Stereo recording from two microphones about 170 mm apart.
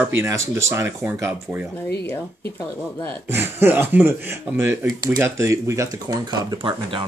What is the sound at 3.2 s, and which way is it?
Speech, 15° right (ahead or behind).